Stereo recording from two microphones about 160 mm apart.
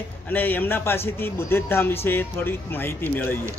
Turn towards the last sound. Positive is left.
turn(degrees=15)  # may be behind; listen again after turning